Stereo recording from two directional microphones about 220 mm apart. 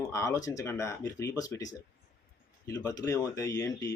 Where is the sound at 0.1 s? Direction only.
15° left (ahead or behind).